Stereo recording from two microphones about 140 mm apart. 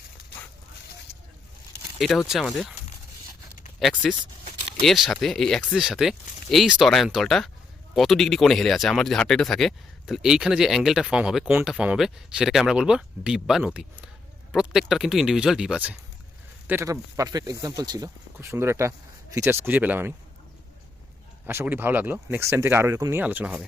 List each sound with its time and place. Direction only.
2.0 s speech: centre (ahead or behind)
3.8 s speech: centre (ahead or behind)
16.6 s speech: 20° right (ahead or behind)
21.4 s speech: 15° right (ahead or behind)
23.2 s speech: 10° right (ahead or behind)